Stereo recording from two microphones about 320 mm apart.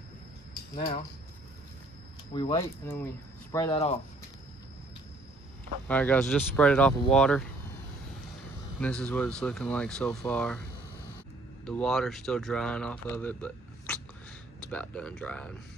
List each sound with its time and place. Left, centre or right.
2.3 s speech: centre
3.5 s speech: centre
5.9 s speech: centre
8.7 s speech: centre
11.6 s speech: centre